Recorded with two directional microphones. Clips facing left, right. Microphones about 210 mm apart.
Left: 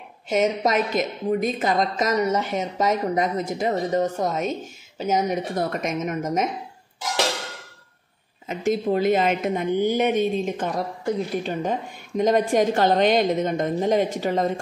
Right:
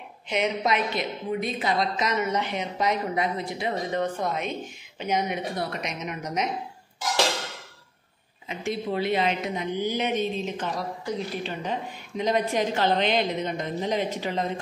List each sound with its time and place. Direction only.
0.3 s a woman's voice: 45° left (ahead or behind)
8.5 s a woman's voice: 45° left (ahead or behind)